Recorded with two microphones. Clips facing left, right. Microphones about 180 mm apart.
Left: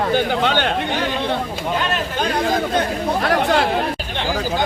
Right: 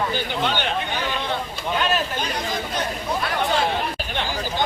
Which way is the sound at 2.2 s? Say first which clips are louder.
Left 8 dB; 55° left (ahead or behind).